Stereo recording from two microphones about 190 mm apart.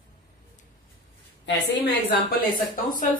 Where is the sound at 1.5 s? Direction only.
65° left (ahead or behind).